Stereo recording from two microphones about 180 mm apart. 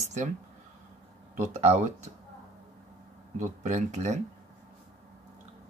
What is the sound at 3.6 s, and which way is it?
Speech, 40° right (ahead or behind).